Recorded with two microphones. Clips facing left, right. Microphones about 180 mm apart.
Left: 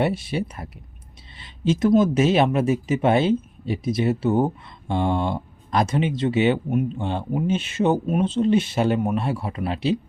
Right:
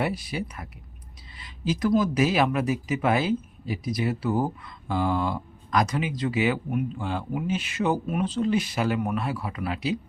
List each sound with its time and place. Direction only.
0.0 s speech: 25° left (ahead or behind)